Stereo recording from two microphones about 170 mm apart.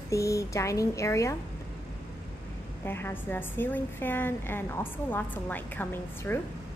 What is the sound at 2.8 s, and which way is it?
A woman's voice, 10° left (ahead or behind).